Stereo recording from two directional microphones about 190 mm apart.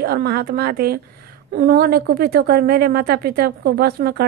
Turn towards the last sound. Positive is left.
turn(degrees=-55)  # may be behind; listen again after turning